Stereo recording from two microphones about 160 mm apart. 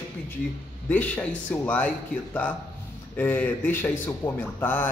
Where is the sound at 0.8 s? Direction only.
10° left (ahead or behind).